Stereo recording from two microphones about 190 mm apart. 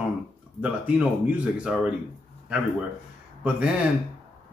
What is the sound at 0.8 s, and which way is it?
Speech, 5° right (ahead or behind).